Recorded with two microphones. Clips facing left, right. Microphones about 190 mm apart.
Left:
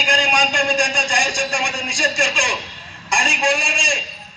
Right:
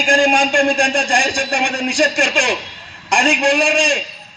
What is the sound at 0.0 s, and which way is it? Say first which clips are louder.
A man's voice: right 6 dB; 50° right (ahead or behind).